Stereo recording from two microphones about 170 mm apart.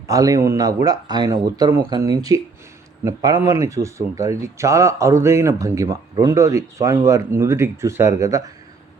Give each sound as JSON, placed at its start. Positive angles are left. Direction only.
{"t": 0.1, "sound": "speech", "side_deg": -20}